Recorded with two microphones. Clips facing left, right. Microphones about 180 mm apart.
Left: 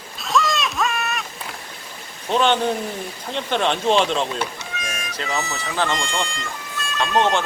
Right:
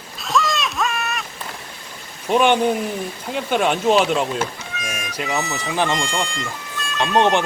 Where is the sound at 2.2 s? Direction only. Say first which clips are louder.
Right 3 dB; 15° right (ahead or behind).